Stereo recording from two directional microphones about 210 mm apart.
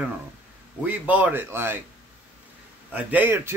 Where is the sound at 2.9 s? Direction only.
5° right (ahead or behind).